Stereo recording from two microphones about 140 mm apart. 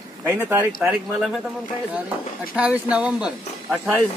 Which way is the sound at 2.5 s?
10° right (ahead or behind).